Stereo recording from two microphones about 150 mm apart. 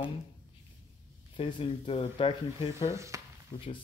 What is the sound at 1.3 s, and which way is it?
Speech, 35° left (ahead or behind).